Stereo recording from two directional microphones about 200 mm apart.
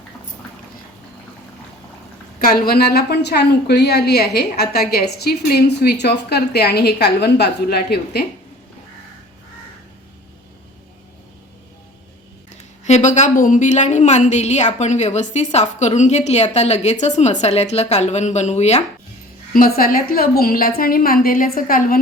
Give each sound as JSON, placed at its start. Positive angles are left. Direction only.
{"t": 2.4, "sound": "a woman's voice", "side_deg": 45}
{"t": 12.8, "sound": "a woman's voice", "side_deg": 35}
{"t": 19.5, "sound": "a woman's voice", "side_deg": 45}